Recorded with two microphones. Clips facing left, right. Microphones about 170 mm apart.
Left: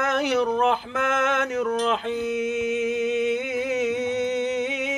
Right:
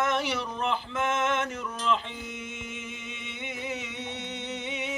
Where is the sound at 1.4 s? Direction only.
85° left.